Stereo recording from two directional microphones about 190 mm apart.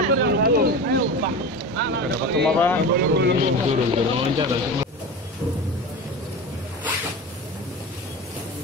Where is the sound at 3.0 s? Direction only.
60° right (ahead or behind).